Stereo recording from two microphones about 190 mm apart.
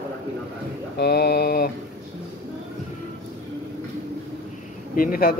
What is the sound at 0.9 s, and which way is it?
Mantra, 60° left (ahead or behind).